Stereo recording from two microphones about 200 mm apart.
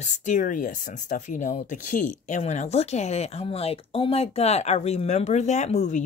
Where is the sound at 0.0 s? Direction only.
35° left (ahead or behind).